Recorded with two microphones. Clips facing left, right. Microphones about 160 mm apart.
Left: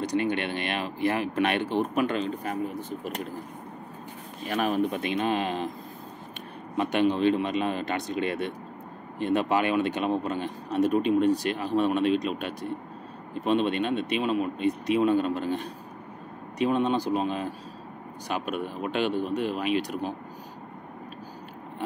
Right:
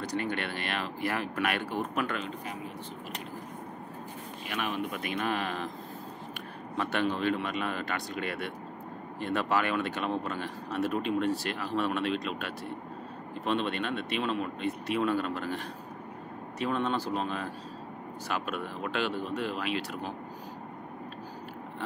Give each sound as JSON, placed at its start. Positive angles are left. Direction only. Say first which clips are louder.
{"t": 0.0, "sound": "speech", "louder": "left 6 dB", "side_deg": 20}
{"t": 4.5, "sound": "speech", "louder": "left 8 dB", "side_deg": 40}
{"t": 6.8, "sound": "speech", "louder": "left 6 dB", "side_deg": 20}